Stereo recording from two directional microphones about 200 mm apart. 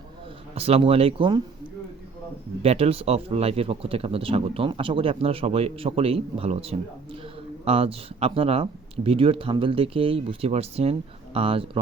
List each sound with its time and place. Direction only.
0.5 s speech: 30° right (ahead or behind)
2.6 s speech: 30° right (ahead or behind)